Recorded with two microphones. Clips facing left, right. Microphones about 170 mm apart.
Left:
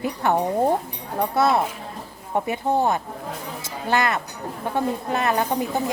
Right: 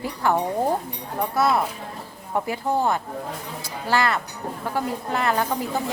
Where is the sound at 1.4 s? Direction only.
25° left (ahead or behind).